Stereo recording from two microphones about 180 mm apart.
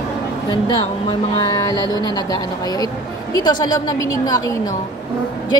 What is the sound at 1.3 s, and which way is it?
A woman's voice, 20° left (ahead or behind).